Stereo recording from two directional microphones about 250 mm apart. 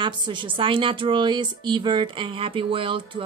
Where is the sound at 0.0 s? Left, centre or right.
Centre.